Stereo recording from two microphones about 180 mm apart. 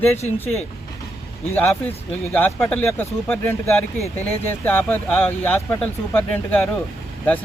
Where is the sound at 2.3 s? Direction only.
10° left (ahead or behind).